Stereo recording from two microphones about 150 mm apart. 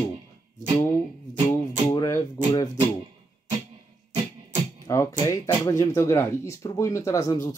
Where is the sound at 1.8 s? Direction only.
20° left (ahead or behind).